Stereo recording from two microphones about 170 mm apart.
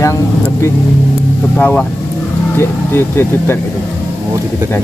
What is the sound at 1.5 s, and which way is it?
Speech, 10° left (ahead or behind).